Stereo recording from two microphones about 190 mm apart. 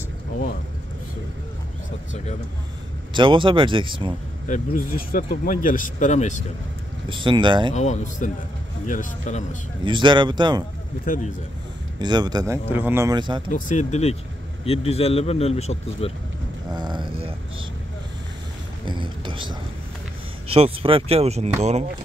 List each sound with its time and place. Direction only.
3.1 s speech: 25° right (ahead or behind)
4.5 s speech: 45° left (ahead or behind)
7.1 s speech: 25° right (ahead or behind)
7.7 s speech: 40° left (ahead or behind)
9.8 s speech: 25° right (ahead or behind)
11.1 s speech: 45° left (ahead or behind)
12.0 s speech: 20° right (ahead or behind)
13.5 s speech: 40° left (ahead or behind)
16.7 s speech: 25° right (ahead or behind)
18.9 s speech: 25° right (ahead or behind)
20.5 s speech: 30° right (ahead or behind)